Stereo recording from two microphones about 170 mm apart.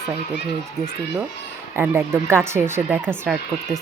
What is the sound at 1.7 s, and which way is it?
Speech, 15° right (ahead or behind).